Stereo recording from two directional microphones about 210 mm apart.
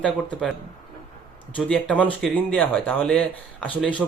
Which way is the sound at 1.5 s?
5° left (ahead or behind).